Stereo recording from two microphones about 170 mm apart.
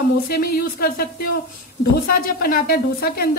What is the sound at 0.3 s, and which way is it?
A woman's voice, 60° left (ahead or behind).